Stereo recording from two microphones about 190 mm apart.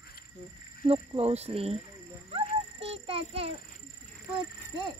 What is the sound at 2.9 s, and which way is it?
Child singing, 30° right (ahead or behind).